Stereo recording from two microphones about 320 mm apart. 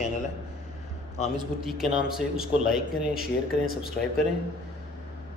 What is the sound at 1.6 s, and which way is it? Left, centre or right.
Speech, centre.